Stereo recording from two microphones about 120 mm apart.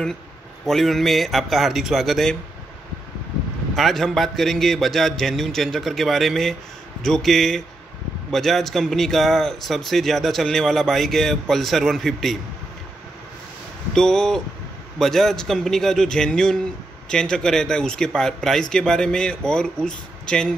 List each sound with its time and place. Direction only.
0.7 s speech: centre (ahead or behind)
3.7 s speech: centre (ahead or behind)
13.9 s speech: 5° left (ahead or behind)